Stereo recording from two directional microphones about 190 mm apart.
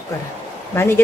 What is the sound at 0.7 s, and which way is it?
Speech, 10° left (ahead or behind).